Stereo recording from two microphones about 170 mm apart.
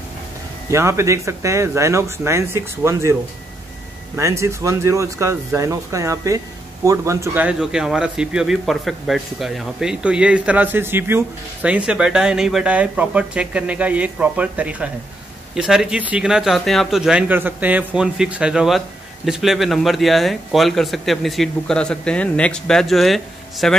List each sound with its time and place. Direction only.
0.7 s speech: 15° right (ahead or behind)
4.2 s a man's voice: 15° right (ahead or behind); by 23.8 s centre (ahead or behind)